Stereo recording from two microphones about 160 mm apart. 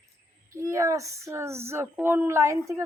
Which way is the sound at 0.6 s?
20° right (ahead or behind).